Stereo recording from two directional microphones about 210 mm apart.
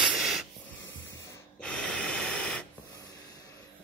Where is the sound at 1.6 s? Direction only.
5° left (ahead or behind).